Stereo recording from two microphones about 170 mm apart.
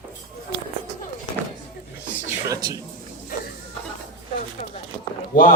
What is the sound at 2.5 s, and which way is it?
Speech, 20° right (ahead or behind).